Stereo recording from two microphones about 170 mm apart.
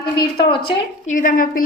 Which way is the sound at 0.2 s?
30° left (ahead or behind).